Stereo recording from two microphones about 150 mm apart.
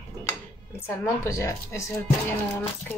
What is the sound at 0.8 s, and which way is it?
Speech, 20° left (ahead or behind).